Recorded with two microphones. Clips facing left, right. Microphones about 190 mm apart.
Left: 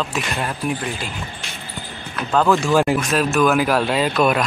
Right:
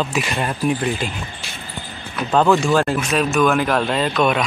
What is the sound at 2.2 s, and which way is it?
Speech, 15° right (ahead or behind).